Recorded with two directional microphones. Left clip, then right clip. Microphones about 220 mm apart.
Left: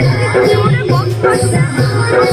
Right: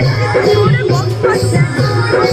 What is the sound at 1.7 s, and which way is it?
Music, 50° left (ahead or behind).